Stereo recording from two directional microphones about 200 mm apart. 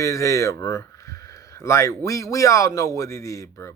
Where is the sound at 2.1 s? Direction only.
15° left (ahead or behind).